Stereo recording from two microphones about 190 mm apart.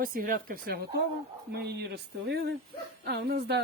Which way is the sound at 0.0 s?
50° right (ahead or behind).